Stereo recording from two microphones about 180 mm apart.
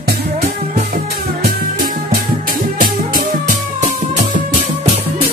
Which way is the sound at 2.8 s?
50° right (ahead or behind).